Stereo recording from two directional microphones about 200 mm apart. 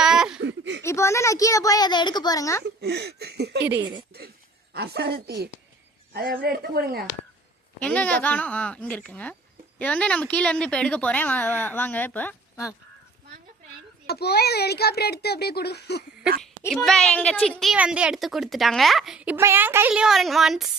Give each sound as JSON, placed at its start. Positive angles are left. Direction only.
{"t": 0.0, "sound": "a sound", "side_deg": -5}
{"t": 0.4, "sound": "a sound", "side_deg": -65}
{"t": 0.8, "sound": "a woman's voice", "side_deg": 15}
{"t": 2.6, "sound": "speech", "side_deg": -55}
{"t": 4.7, "sound": "a woman's voice", "side_deg": -55}
{"t": 7.8, "sound": "speech", "side_deg": 5}
{"t": 14.1, "sound": "speech", "side_deg": 55}
{"t": 16.6, "sound": "a woman's voice", "side_deg": 0}